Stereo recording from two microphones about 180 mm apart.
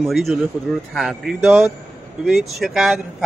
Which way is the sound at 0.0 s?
Centre (ahead or behind).